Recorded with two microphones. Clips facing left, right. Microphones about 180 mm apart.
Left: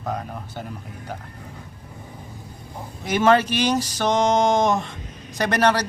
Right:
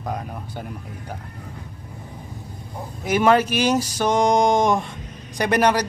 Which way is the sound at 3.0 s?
10° right (ahead or behind).